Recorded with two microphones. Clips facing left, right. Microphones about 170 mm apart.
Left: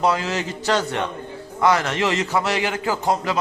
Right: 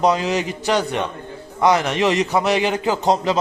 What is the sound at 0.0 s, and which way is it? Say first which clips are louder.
A man's voice: right 3 dB; 20° right (ahead or behind).